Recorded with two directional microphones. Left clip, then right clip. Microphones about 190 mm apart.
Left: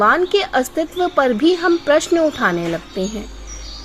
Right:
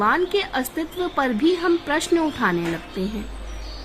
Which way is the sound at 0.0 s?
20° left (ahead or behind).